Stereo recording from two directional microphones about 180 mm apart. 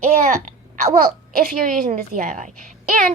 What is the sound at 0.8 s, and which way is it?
Speech, 50° right (ahead or behind).